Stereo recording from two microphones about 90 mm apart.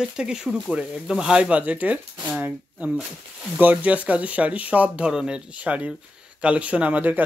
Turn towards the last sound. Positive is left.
turn(degrees=-15)  # may be behind; listen again after turning